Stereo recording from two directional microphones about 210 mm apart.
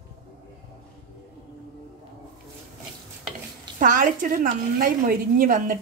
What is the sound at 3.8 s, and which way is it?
A woman's voice, 40° right (ahead or behind).